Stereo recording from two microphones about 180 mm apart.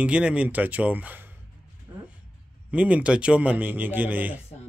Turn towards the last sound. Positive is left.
turn(degrees=-10)  # may be behind; listen again after turning